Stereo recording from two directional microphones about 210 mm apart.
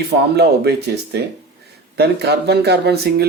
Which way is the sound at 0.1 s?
50° right (ahead or behind).